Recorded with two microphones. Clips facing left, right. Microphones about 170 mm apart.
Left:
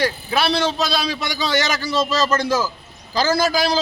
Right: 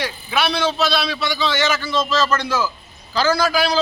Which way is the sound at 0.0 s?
35° left (ahead or behind).